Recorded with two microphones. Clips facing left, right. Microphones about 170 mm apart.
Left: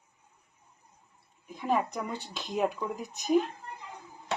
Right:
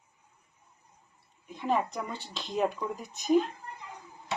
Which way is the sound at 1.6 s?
Centre (ahead or behind).